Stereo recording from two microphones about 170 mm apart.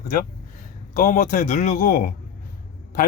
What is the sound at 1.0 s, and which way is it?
Speech, 50° left (ahead or behind).